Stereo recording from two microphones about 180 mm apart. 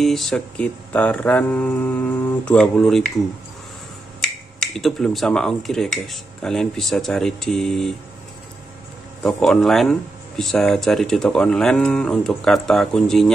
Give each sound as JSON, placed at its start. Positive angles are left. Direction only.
{"t": 0.0, "sound": "mantra", "side_deg": 0}
{"t": 4.2, "sound": "speech", "side_deg": 0}
{"t": 9.2, "sound": "speech", "side_deg": 0}